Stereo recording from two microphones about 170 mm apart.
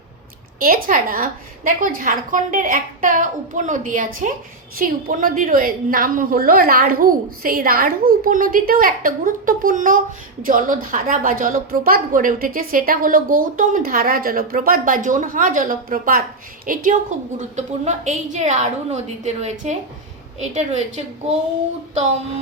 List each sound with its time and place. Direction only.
0.6 s a woman's voice: 55° right (ahead or behind)